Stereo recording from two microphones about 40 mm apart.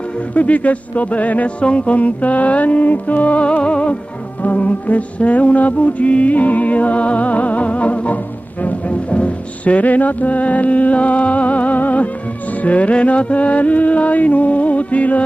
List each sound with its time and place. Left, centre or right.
0.3 s music: left
4.4 s music: left